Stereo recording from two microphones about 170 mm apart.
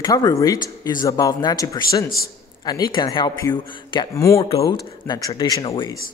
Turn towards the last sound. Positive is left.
turn(degrees=20)  # may be behind; listen again after turning